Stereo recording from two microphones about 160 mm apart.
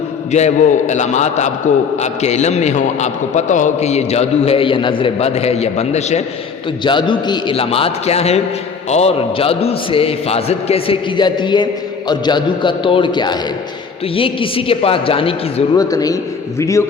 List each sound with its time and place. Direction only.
0.3 s a man's voice: 45° left (ahead or behind)
6.8 s a man's voice: 30° left (ahead or behind)
15.8 s a man's voice: 25° left (ahead or behind)